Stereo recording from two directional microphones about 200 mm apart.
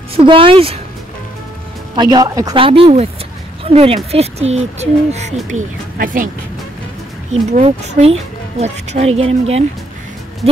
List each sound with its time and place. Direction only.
0.1 s speech: 25° right (ahead or behind)
2.0 s speech: 20° right (ahead or behind); by 6.3 s 45° right (ahead or behind)
7.3 s speech: 35° right (ahead or behind)